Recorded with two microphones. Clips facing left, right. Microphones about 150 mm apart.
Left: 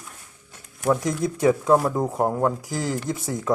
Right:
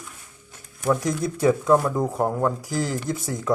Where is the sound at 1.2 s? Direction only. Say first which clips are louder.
Left 1 dB; 20° left (ahead or behind).